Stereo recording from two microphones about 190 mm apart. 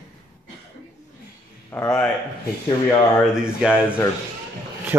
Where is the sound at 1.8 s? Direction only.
5° left (ahead or behind).